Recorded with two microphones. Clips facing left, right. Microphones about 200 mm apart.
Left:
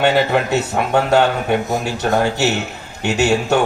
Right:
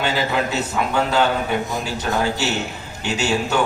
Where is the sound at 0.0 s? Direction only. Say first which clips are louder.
Left 6 dB; 65° left (ahead or behind).